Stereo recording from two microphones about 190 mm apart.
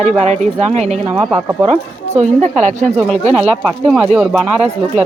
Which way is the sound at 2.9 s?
Centre (ahead or behind).